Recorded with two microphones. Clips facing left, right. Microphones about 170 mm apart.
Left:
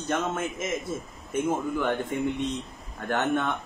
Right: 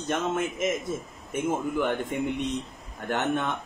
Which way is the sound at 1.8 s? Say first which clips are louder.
Even; 15° right (ahead or behind).